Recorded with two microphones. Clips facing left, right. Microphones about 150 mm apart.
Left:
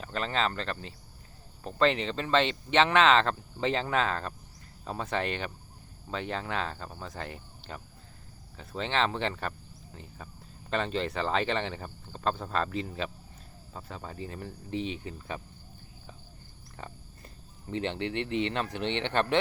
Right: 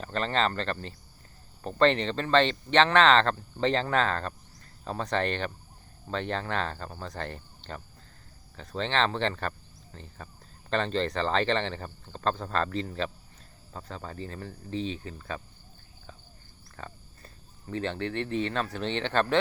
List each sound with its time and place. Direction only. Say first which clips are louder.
0.0 s speech: right 3 dB; 5° left (ahead or behind)
16.7 s speech: right 1 dB; 20° left (ahead or behind)